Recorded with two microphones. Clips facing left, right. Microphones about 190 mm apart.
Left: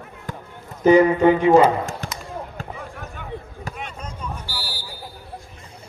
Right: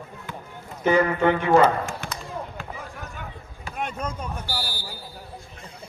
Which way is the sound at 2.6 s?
40° left (ahead or behind).